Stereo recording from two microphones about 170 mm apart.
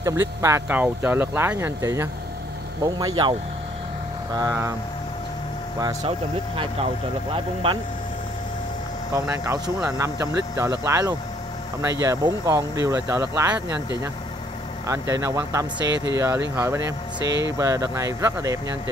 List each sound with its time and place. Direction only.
0.0 s speech: 20° right (ahead or behind)
6.0 s speech: 35° right (ahead or behind)
9.1 s speech: 15° right (ahead or behind)
15.9 s speech: 90° right
16.5 s speech: 15° right (ahead or behind)